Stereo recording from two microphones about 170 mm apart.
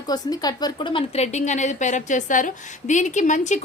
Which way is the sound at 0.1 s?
25° left (ahead or behind).